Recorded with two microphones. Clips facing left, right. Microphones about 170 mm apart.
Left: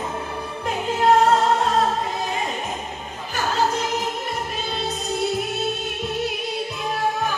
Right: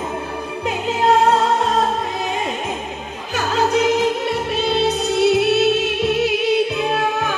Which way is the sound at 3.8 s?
80° right.